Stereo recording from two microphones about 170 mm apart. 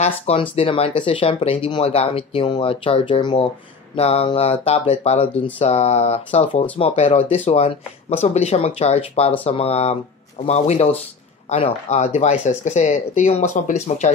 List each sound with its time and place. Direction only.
0.0 s speech: 35° left (ahead or behind)